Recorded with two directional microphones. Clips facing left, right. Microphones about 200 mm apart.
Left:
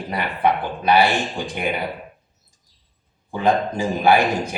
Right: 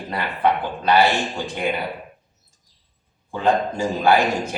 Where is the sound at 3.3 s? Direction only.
15° left (ahead or behind).